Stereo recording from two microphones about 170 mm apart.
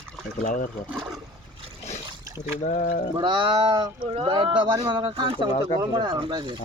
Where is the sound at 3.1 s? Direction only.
30° right (ahead or behind).